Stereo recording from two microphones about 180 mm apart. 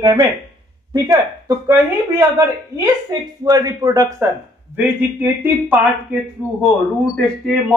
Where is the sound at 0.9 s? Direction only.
20° right (ahead or behind).